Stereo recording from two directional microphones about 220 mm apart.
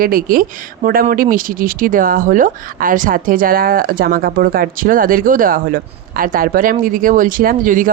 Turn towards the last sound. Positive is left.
turn(degrees=-40)  # may be behind; listen again after turning